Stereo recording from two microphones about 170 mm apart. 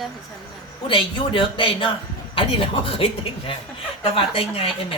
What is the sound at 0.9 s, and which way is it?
A woman's voice, 30° left (ahead or behind).